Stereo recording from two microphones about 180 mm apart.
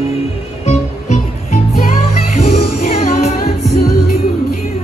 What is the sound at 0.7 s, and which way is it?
Music, 40° left (ahead or behind).